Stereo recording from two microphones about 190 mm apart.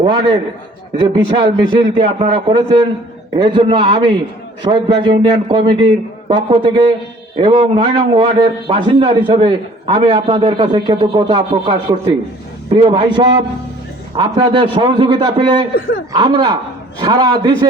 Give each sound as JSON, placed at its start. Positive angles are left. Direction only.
{"t": 0.0, "sound": "a man's voice", "side_deg": -25}